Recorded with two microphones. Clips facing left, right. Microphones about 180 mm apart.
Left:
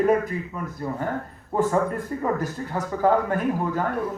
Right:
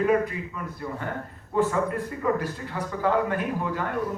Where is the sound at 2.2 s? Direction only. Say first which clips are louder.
Even; 45° left (ahead or behind).